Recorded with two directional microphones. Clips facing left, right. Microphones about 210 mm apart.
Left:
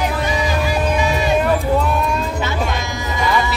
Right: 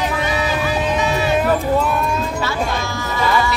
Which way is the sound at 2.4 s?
20° left (ahead or behind).